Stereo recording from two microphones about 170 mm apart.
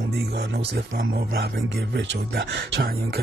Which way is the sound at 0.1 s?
85° right.